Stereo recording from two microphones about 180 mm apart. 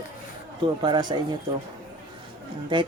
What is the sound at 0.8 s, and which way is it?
Speech, 25° right (ahead or behind).